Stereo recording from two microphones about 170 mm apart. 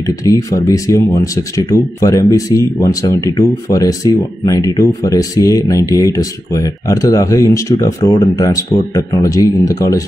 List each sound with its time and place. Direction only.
0.0 s speech: 20° left (ahead or behind)